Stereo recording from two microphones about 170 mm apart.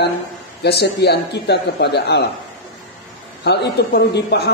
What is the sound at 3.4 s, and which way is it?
Speech, 75° left (ahead or behind).